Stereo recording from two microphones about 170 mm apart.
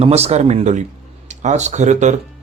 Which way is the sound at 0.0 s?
40° right (ahead or behind).